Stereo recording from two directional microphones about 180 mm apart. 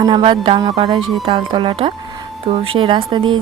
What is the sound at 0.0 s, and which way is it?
Music, 25° right (ahead or behind).